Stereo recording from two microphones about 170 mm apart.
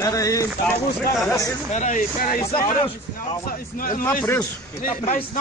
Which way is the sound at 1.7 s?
45° left (ahead or behind).